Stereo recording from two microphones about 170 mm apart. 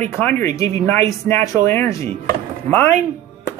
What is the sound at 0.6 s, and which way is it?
A man's voice, 15° left (ahead or behind).